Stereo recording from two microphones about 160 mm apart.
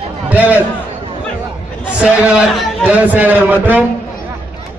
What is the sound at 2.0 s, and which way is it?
A man's voice, 5° right (ahead or behind).